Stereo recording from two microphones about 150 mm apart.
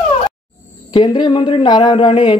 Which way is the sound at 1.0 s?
30° left (ahead or behind).